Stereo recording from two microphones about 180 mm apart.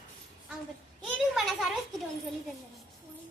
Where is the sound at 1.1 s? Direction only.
Centre (ahead or behind).